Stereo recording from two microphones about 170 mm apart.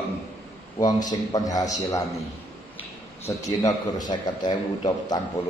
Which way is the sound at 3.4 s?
20° left (ahead or behind).